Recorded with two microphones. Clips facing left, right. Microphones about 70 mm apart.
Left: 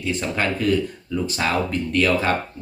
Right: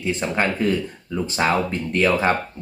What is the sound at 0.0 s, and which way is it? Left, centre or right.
Speech, right.